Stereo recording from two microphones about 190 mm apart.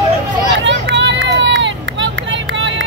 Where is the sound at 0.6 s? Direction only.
70° right (ahead or behind).